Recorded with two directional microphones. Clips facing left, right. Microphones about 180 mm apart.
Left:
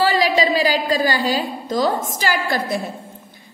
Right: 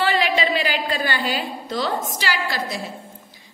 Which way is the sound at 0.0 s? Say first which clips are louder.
Left 4 dB; 35° left (ahead or behind).